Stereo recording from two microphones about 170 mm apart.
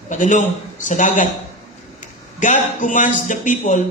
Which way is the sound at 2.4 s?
50° left (ahead or behind).